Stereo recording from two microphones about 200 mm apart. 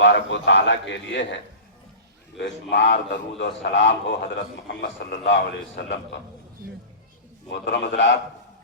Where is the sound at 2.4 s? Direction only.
65° left (ahead or behind).